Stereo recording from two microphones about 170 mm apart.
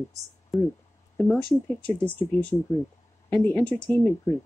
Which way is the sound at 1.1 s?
10° left (ahead or behind).